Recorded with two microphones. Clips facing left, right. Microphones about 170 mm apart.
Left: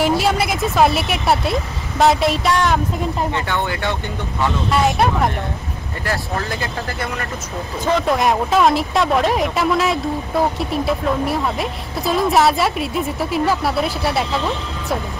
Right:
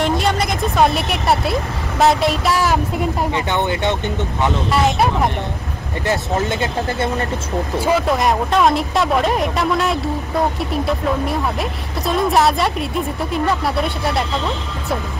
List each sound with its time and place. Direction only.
0.0 s speech: 5° left (ahead or behind)
3.3 s speech: 20° right (ahead or behind)
4.6 s speech: centre (ahead or behind)
6.0 s speech: 20° right (ahead or behind)
7.8 s speech: 5° right (ahead or behind)